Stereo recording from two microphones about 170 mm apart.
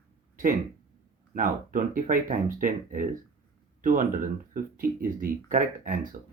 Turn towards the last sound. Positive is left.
turn(degrees=-50)  # may be behind; listen again after turning